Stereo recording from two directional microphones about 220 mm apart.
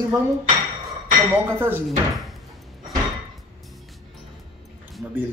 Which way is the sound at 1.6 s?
10° right (ahead or behind).